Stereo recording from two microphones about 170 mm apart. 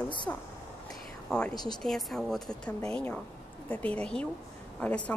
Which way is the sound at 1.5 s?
25° left (ahead or behind).